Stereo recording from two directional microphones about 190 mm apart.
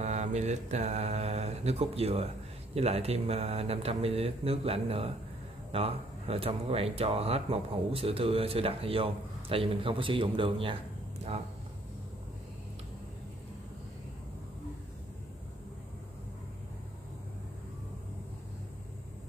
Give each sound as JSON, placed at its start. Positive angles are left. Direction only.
{"t": 0.0, "sound": "mantra", "side_deg": -35}
{"t": 2.7, "sound": "speech", "side_deg": -35}